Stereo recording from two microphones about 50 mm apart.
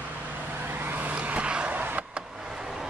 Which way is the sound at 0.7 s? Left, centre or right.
Right.